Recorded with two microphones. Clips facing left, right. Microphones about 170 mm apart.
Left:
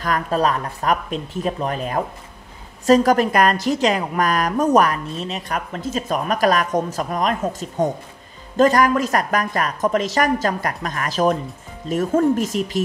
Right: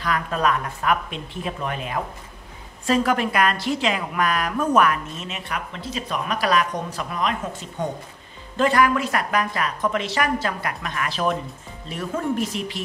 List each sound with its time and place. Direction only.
0.0 s a woman's voice: 40° left (ahead or behind)